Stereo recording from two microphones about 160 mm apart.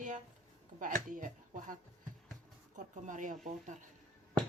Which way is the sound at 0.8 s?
55° right (ahead or behind).